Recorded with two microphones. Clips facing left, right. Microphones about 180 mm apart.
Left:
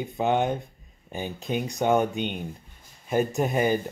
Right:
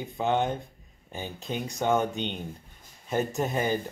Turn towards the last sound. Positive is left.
turn(degrees=15)  # may be behind; listen again after turning